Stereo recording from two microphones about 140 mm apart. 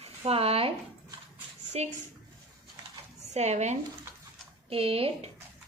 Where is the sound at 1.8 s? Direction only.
50° right (ahead or behind).